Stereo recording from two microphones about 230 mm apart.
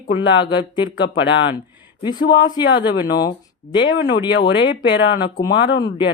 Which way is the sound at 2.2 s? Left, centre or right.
Left.